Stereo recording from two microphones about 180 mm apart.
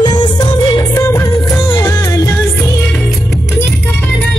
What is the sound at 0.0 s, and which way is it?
Music, 25° left (ahead or behind).